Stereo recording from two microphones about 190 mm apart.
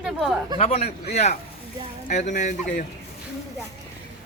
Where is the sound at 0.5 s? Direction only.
35° left (ahead or behind).